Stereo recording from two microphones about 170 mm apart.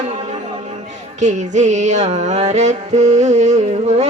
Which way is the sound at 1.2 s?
45° right (ahead or behind).